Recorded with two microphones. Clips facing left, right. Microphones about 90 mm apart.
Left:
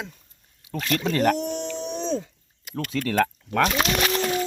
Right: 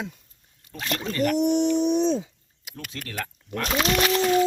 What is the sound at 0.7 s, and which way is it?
Speech, 25° right (ahead or behind).